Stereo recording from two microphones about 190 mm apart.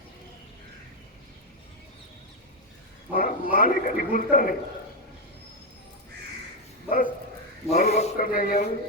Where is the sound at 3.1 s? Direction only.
45° left (ahead or behind).